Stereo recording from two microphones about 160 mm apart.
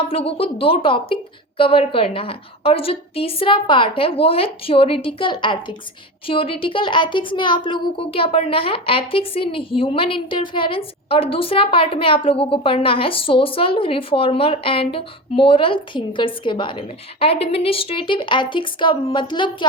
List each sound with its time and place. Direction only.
0.1 s speech: 35° left (ahead or behind)